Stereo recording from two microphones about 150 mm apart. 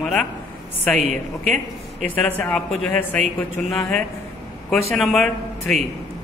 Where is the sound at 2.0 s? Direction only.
10° left (ahead or behind).